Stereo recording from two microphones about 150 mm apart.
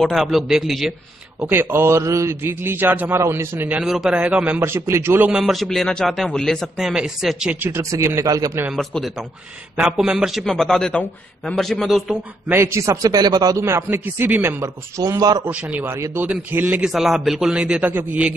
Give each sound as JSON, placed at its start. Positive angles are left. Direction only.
{"t": 0.0, "sound": "a man's voice", "side_deg": 0}
{"t": 1.4, "sound": "a man's voice", "side_deg": -15}
{"t": 5.4, "sound": "a man's voice", "side_deg": 0}
{"t": 7.7, "sound": "a man's voice", "side_deg": -20}
{"t": 8.6, "sound": "a man's voice", "side_deg": 0}
{"t": 12.4, "sound": "a man's voice", "side_deg": -15}
{"t": 15.5, "sound": "a man's voice", "side_deg": -10}
{"t": 16.9, "sound": "a man's voice", "side_deg": 0}